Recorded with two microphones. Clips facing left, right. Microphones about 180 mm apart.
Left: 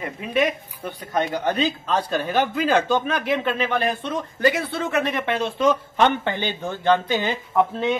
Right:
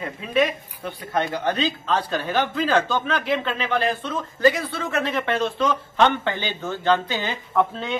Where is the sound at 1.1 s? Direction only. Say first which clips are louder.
Left 1 dB; 10° left (ahead or behind).